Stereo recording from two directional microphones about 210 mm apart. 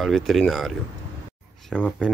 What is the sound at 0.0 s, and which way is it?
Speech, centre (ahead or behind).